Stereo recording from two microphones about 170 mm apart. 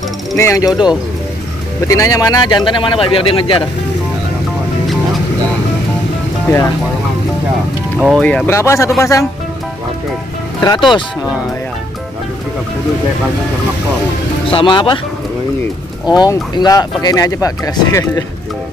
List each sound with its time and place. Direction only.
0.4 s speech: 20° left (ahead or behind)
1.9 s speech: 20° left (ahead or behind)
8.0 s speech: 5° left (ahead or behind)
10.6 s speech: 25° left (ahead or behind)
14.5 s speech: 30° left (ahead or behind)
16.1 s speech: 25° left (ahead or behind)